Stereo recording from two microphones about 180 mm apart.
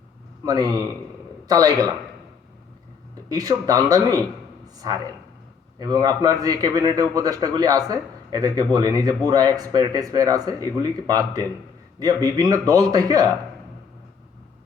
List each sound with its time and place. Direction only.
0.4 s a man's voice: 20° right (ahead or behind)
3.2 s a man's voice: 20° right (ahead or behind)